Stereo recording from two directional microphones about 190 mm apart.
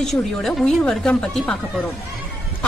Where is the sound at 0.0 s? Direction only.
Centre (ahead or behind).